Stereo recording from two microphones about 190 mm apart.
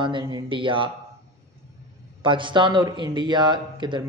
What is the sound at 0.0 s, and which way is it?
Speech, 25° right (ahead or behind).